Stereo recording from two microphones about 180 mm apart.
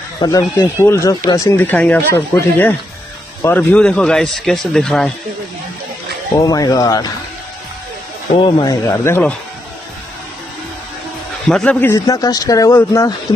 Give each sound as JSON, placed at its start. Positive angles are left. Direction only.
{"t": 0.2, "sound": "a man's voice", "side_deg": 20}
{"t": 6.3, "sound": "speech", "side_deg": 20}
{"t": 8.4, "sound": "speech", "side_deg": 25}
{"t": 11.4, "sound": "a man's voice", "side_deg": 5}
{"t": 11.9, "sound": "speech", "side_deg": 20}